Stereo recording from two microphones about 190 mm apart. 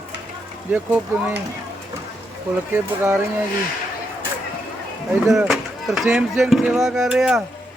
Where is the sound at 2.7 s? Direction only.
10° right (ahead or behind).